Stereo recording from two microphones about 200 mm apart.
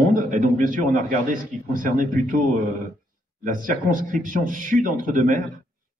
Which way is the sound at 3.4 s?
45° right (ahead or behind).